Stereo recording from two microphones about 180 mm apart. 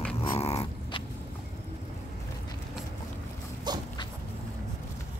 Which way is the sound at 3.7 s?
25° right (ahead or behind).